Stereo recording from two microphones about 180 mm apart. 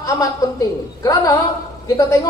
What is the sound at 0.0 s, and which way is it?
A man's voice, 20° left (ahead or behind).